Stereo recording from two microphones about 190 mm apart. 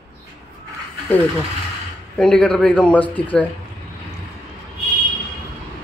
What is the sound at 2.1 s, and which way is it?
Speech, 5° left (ahead or behind).